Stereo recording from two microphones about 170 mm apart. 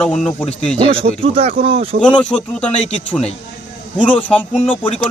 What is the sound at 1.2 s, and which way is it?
Speech, 35° right (ahead or behind).